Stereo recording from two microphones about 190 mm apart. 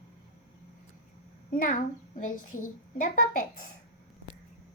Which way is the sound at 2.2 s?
45° left (ahead or behind).